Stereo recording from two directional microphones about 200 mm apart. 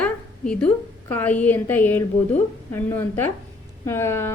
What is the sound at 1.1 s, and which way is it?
Speech, 10° left (ahead or behind).